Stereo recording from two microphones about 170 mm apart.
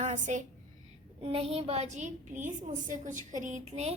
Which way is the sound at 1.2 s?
35° right (ahead or behind).